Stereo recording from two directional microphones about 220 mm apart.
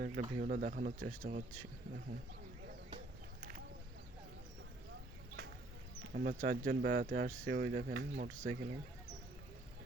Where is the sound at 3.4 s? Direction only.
40° right (ahead or behind).